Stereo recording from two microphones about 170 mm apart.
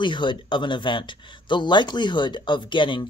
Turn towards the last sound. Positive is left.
turn(degrees=30)  # may be behind; listen again after turning